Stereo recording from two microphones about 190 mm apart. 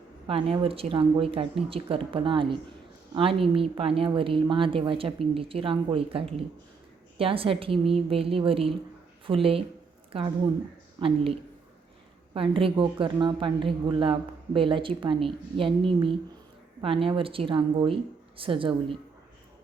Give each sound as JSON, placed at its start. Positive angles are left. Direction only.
{"t": 0.3, "sound": "a woman's voice", "side_deg": -30}